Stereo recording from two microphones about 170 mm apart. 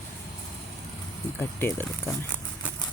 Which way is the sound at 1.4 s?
10° left (ahead or behind).